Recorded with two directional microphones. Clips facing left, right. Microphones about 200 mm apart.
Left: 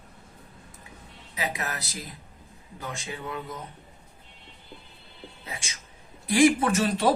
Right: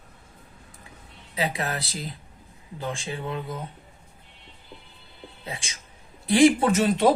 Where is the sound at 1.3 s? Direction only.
30° right (ahead or behind).